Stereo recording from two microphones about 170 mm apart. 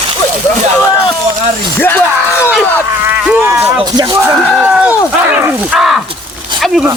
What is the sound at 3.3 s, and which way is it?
Speech, 10° right (ahead or behind).